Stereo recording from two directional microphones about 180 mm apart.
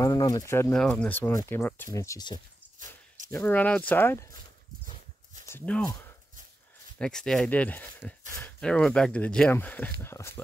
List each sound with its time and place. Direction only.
0.0 s speech: 20° left (ahead or behind)
3.3 s speech: 10° left (ahead or behind)
5.5 s speech: 5° left (ahead or behind)
7.0 s speech: 5° left (ahead or behind)